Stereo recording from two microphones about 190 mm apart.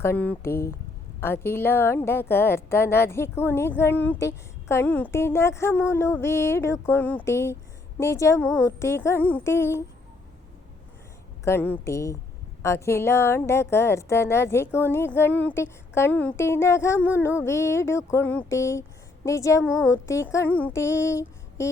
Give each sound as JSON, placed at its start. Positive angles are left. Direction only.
{"t": 0.0, "sound": "a woman's voice", "side_deg": 10}
{"t": 11.4, "sound": "a woman's voice", "side_deg": 10}